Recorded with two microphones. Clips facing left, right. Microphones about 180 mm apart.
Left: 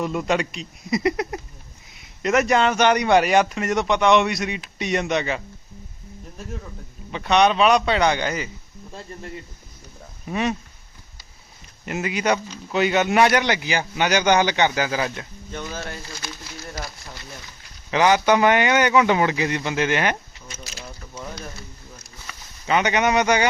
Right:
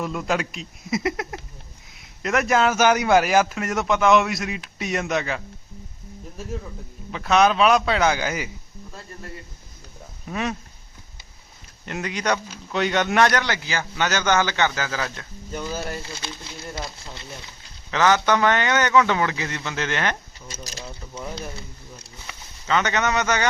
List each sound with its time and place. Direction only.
0.0 s speech: centre (ahead or behind)
7.1 s speech: centre (ahead or behind)
10.2 s speech: 5° left (ahead or behind)
11.9 s speech: 5° left (ahead or behind)
15.5 s speech: 5° right (ahead or behind)
16.2 s speech: 25° right (ahead or behind)
17.9 s speech: 15° left (ahead or behind)
22.3 s a sound: 20° right (ahead or behind)
22.6 s speech: 15° left (ahead or behind)